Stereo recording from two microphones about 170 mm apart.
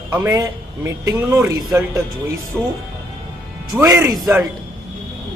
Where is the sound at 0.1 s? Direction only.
20° right (ahead or behind).